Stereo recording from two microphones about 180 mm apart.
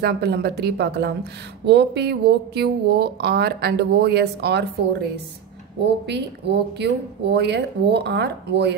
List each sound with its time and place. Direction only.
0.0 s a woman's voice: 65° right (ahead or behind)